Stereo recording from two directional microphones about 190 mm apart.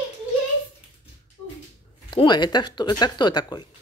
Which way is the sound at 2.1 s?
25° left (ahead or behind).